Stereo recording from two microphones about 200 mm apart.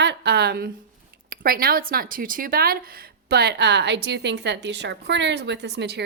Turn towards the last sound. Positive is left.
turn(degrees=-55)  # may be behind; listen again after turning